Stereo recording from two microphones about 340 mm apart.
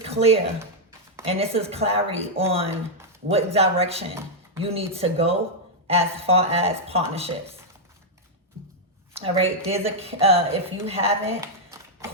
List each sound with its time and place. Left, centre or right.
0.1 s a woman's voice: centre
9.1 s a woman's voice: centre